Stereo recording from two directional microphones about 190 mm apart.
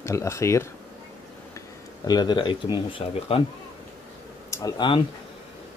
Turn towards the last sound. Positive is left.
turn(degrees=25)  # may be behind; listen again after turning